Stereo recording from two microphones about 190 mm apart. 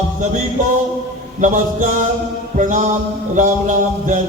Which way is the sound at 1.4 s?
40° right (ahead or behind).